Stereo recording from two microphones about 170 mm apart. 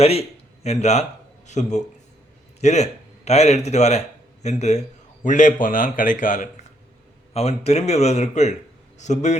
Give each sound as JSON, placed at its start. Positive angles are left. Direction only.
{"t": 0.0, "sound": "a man's voice", "side_deg": 35}
{"t": 7.3, "sound": "a man's voice", "side_deg": 40}